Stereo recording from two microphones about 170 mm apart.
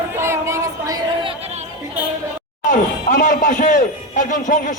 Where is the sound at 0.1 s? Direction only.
15° right (ahead or behind); by 1.6 s 40° right (ahead or behind).